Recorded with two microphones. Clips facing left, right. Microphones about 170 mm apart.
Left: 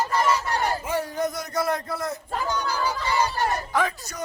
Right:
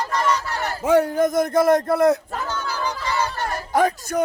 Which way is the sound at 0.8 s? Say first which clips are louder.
Right 9 dB; 65° right (ahead or behind).